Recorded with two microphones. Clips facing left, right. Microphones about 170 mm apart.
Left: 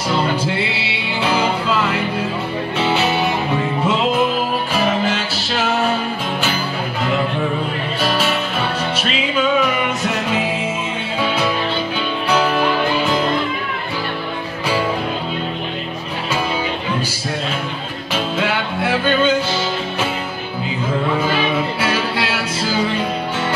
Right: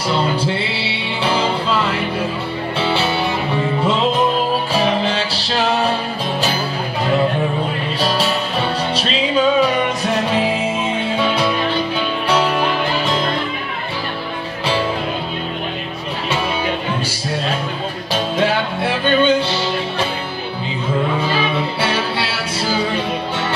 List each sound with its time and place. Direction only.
4.7 s music: 30° right (ahead or behind)
8.9 s music: 35° right (ahead or behind)
18.1 s music: 35° right (ahead or behind)